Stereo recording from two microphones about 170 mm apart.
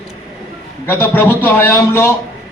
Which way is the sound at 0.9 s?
15° left (ahead or behind).